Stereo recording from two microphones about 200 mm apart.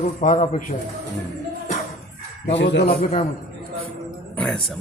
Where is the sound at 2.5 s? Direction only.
60° left (ahead or behind).